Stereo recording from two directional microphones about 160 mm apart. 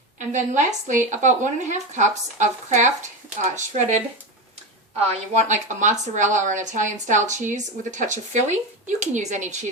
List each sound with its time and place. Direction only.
0.2 s a woman's voice: 50° right (ahead or behind)
5.4 s a woman's voice: 50° right (ahead or behind)